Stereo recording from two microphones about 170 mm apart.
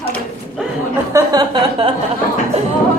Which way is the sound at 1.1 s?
25° right (ahead or behind).